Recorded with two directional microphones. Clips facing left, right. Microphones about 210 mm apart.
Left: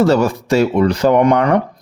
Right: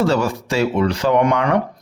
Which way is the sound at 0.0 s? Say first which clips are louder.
Left 5 dB; 40° left (ahead or behind).